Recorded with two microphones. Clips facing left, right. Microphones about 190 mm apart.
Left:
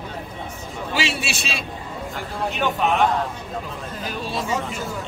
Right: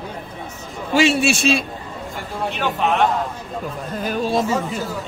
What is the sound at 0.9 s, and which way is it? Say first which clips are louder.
Speech: right 10 dB; 50° right (ahead or behind).